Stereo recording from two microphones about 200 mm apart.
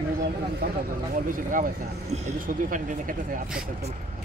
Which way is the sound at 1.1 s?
40° right (ahead or behind).